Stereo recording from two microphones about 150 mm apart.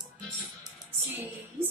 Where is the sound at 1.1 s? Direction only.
15° right (ahead or behind).